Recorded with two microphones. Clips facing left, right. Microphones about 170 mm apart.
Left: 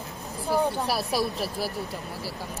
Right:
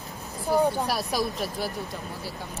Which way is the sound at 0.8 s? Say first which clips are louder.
Left 1 dB; centre (ahead or behind).